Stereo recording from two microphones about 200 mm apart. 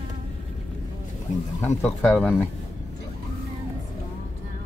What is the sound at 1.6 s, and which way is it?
Speech, 10° left (ahead or behind).